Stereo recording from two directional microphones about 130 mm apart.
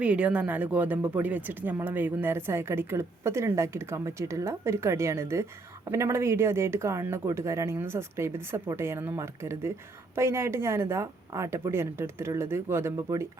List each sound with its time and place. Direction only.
0.0 s speech: 10° right (ahead or behind)